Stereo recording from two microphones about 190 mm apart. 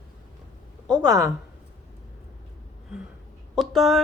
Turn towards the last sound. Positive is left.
turn(degrees=0)  # may be behind; listen again after turning